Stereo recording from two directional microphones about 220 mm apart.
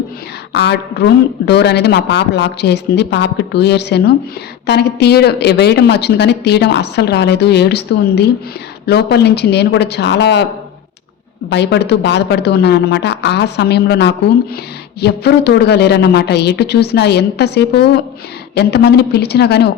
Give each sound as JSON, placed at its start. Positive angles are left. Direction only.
{"t": 0.5, "sound": "speech", "side_deg": 50}
{"t": 11.4, "sound": "speech", "side_deg": 50}